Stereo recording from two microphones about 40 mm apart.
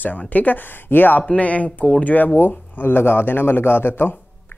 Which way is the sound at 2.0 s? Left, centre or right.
Left.